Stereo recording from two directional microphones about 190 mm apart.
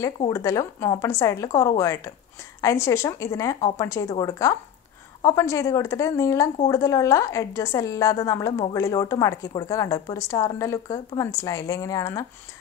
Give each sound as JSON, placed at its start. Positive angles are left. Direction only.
{"t": 0.3, "sound": "a woman's voice", "side_deg": 15}